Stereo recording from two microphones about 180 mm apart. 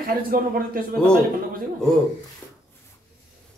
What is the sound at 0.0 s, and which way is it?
Speech, 55° right (ahead or behind).